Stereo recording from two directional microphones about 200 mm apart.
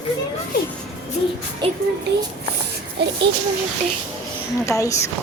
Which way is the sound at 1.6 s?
25° right (ahead or behind).